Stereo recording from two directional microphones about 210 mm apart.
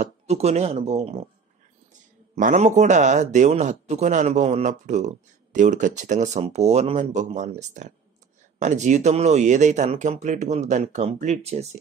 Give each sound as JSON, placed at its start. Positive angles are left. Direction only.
{"t": 0.0, "sound": "speech", "side_deg": -30}
{"t": 2.3, "sound": "speech", "side_deg": -35}